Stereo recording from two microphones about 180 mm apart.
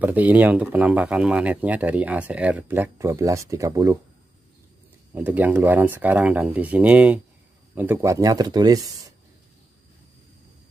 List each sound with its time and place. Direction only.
0.0 s speech: 10° right (ahead or behind)
5.1 s speech: 10° right (ahead or behind)